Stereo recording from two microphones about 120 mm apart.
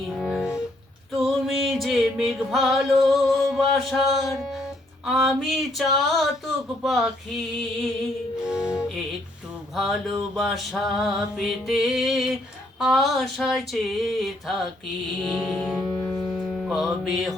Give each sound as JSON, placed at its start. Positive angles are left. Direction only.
{"t": 0.2, "sound": "music", "side_deg": -5}
{"t": 8.4, "sound": "music", "side_deg": -5}